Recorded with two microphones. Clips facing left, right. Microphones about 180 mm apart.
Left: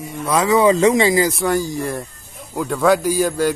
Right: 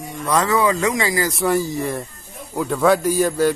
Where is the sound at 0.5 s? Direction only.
25° left (ahead or behind).